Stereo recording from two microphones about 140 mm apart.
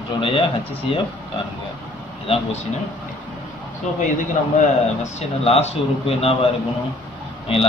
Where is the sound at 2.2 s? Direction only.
40° left (ahead or behind).